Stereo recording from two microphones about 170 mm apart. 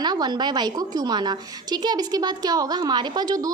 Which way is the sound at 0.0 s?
25° right (ahead or behind).